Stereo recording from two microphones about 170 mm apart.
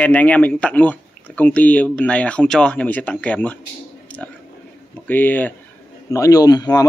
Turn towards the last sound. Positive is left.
turn(degrees=25)  # may be behind; listen again after turning